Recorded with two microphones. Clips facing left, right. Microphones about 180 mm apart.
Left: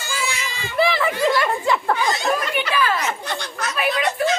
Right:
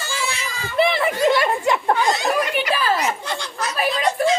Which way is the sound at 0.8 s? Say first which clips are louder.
Right 1 dB; 25° right (ahead or behind).